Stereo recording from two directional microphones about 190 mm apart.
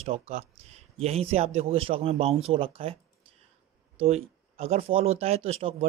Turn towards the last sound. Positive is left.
turn(degrees=-30)  # may be behind; listen again after turning